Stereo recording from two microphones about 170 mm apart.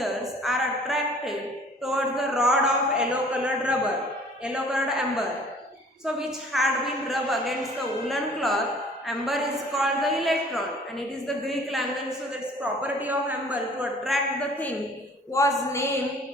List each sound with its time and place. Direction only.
0.0 s a sound: centre (ahead or behind)
1.8 s a man's voice: centre (ahead or behind)
14.0 s speech: centre (ahead or behind)
15.4 s a woman's voice: 15° left (ahead or behind)